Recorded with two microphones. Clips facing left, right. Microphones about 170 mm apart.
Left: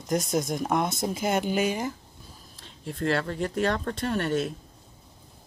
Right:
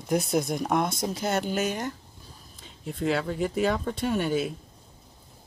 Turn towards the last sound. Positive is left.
turn(degrees=-5)  # may be behind; listen again after turning